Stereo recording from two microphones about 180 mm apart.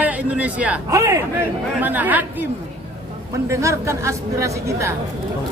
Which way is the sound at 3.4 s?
15° right (ahead or behind).